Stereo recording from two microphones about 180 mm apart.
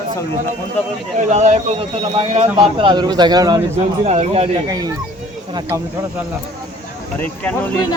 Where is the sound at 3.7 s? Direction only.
40° right (ahead or behind).